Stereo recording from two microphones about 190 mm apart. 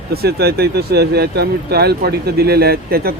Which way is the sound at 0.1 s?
55° right (ahead or behind).